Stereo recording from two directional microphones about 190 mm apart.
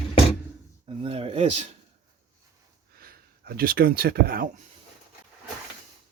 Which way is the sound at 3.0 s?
50° right (ahead or behind).